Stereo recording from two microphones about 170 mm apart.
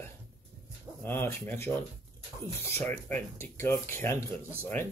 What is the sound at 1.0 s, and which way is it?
Speech, 10° left (ahead or behind).